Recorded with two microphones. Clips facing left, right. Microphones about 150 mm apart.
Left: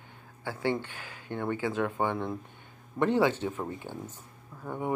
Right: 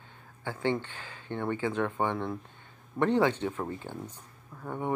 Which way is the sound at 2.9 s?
10° right (ahead or behind).